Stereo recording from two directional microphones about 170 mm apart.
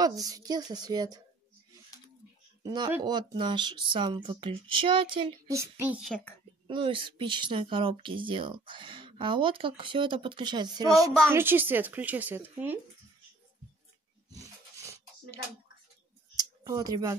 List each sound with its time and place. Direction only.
0.0 s speech: 20° right (ahead or behind)
2.6 s speech: 25° right (ahead or behind)
5.5 s a woman's voice: 15° right (ahead or behind)
6.0 s a woman's voice: 5° left (ahead or behind)
6.7 s a woman's voice: 30° right (ahead or behind); by 12.7 s 10° right (ahead or behind)
14.3 s a sound: 20° right (ahead or behind)
16.6 s speech: 20° right (ahead or behind)